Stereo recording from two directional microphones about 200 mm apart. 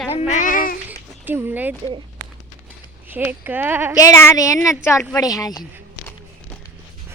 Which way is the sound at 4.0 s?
15° left (ahead or behind).